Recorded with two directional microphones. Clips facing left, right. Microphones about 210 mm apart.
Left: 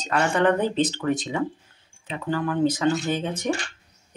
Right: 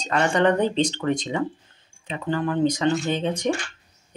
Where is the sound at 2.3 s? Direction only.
20° right (ahead or behind).